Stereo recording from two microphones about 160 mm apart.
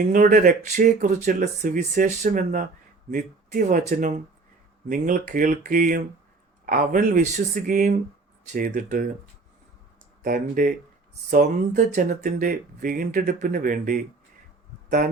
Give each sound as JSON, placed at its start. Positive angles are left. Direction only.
{"t": 0.0, "sound": "speech", "side_deg": -55}
{"t": 10.2, "sound": "speech", "side_deg": -60}